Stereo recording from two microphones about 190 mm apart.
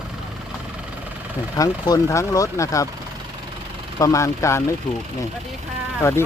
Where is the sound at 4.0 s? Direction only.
15° left (ahead or behind).